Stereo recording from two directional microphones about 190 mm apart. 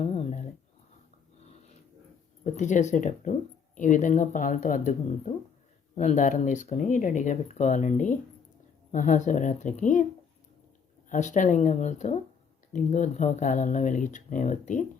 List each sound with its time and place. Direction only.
0.0 s a sound: 35° left (ahead or behind)
2.4 s speech: 40° left (ahead or behind)
11.1 s speech: 40° left (ahead or behind)